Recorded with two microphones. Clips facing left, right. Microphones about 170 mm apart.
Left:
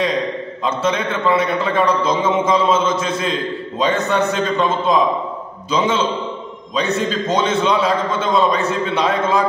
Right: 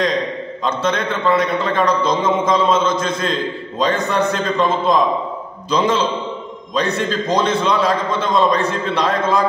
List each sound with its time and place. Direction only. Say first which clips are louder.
0.7 s a man's voice: even; 5° left (ahead or behind)